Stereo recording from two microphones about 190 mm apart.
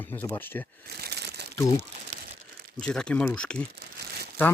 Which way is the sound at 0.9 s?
55° right (ahead or behind).